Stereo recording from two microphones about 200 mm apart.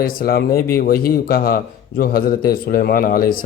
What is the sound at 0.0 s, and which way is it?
A man's voice, 45° left (ahead or behind).